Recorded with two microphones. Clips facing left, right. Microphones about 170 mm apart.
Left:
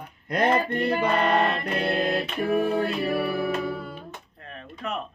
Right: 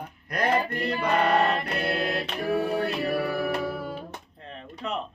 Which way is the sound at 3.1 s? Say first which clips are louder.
Left 1 dB; 25° left (ahead or behind).